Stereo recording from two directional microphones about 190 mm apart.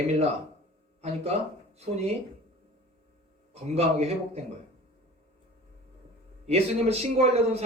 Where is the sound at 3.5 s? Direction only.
35° right (ahead or behind).